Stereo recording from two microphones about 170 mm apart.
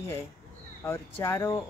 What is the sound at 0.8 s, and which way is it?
Speech, 15° left (ahead or behind).